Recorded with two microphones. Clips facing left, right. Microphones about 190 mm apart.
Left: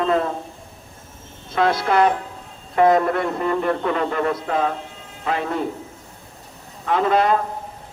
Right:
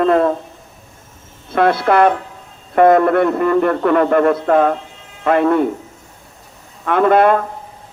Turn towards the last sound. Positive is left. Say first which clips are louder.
# right 6 dB
turn(degrees=-60)  # may be behind; listen again after turning